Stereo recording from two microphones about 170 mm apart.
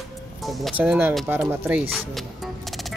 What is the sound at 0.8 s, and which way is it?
Speech, 10° right (ahead or behind).